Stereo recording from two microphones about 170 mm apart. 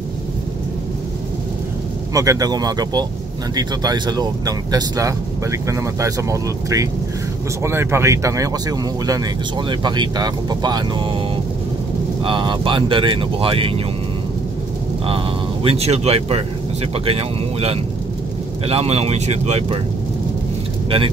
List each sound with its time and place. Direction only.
2.1 s speech: 20° right (ahead or behind)
12.2 s speech: 30° right (ahead or behind)
15.0 s speech: 35° right (ahead or behind)